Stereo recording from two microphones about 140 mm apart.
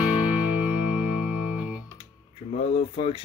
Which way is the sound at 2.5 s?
50° left (ahead or behind).